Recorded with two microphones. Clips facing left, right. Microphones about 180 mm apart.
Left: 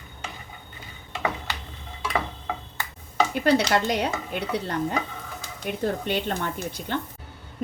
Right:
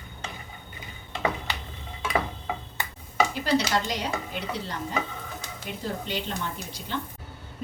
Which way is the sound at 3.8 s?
60° left (ahead or behind).